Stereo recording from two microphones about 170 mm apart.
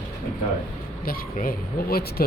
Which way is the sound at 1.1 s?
55° left (ahead or behind).